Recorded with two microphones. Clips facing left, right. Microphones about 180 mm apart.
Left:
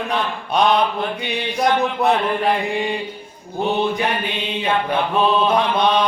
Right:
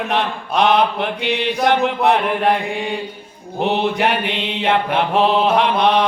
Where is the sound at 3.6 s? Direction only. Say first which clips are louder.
Right 2 dB; 70° right (ahead or behind).